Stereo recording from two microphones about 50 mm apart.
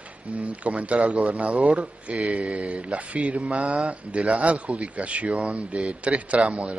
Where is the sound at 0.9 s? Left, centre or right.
Centre.